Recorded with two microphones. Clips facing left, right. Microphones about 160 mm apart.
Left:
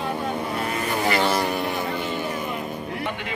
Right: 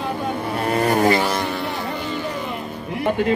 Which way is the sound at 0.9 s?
45° right (ahead or behind).